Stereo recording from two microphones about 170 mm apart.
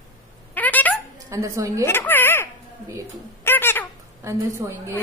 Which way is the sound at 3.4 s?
15° left (ahead or behind).